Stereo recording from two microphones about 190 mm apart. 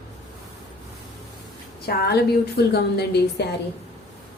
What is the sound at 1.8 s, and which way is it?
A woman's voice, 55° left (ahead or behind).